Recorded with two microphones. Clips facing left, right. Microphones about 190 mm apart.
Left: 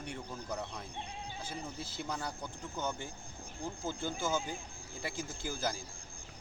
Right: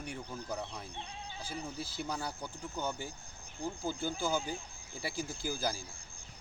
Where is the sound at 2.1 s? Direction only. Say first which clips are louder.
Right 1 dB; 5° right (ahead or behind).